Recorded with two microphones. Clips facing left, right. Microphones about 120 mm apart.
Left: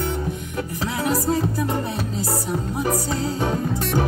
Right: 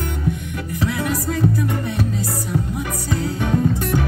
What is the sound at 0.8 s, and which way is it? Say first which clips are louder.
Music: even; 30° left (ahead or behind).